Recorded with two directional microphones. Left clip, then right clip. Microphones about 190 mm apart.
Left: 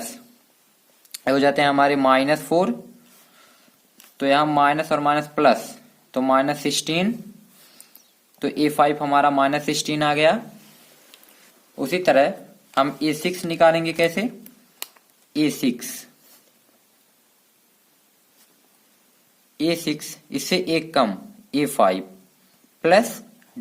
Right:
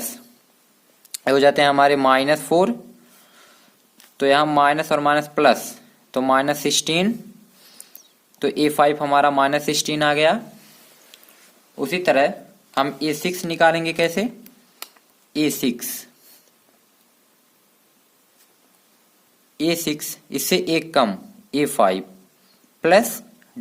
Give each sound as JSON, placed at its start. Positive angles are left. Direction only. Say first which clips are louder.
{"t": 0.0, "sound": "a sound", "louder": "right 1 dB", "side_deg": -30}
{"t": 1.1, "sound": "speech", "louder": "right 3 dB", "side_deg": -25}
{"t": 4.2, "sound": "speech", "louder": "right 2 dB", "side_deg": -30}
{"t": 11.1, "sound": "a sound", "louder": "right 2 dB", "side_deg": -10}
{"t": 11.7, "sound": "speech", "louder": "even", "side_deg": -10}
{"t": 15.3, "sound": "speech", "louder": "right 1 dB", "side_deg": -20}
{"t": 19.5, "sound": "speech", "louder": "right 1 dB", "side_deg": -20}